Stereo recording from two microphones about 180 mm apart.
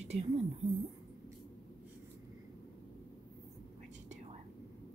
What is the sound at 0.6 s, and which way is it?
Speech, centre (ahead or behind).